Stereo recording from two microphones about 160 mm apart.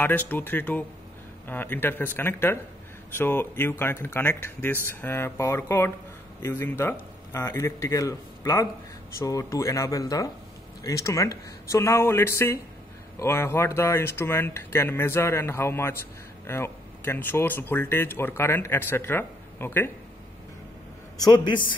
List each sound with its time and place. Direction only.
0.0 s speech: 10° left (ahead or behind)
21.2 s speech: 25° left (ahead or behind)